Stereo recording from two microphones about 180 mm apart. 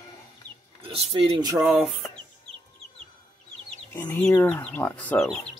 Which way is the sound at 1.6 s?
10° right (ahead or behind).